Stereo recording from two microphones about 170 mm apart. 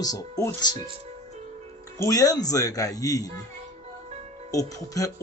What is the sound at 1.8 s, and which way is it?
Speech, 20° left (ahead or behind).